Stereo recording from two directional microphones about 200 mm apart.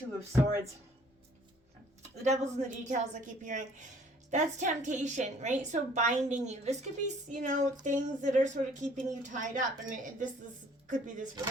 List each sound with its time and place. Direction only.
0.3 s speech: 15° right (ahead or behind)
2.0 s a woman's voice: 35° right (ahead or behind)